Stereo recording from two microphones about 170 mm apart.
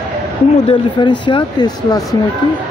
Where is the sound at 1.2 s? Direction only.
25° left (ahead or behind).